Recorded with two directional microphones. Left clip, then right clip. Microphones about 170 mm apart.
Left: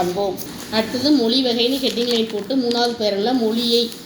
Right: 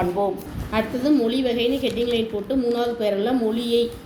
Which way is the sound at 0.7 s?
Centre (ahead or behind).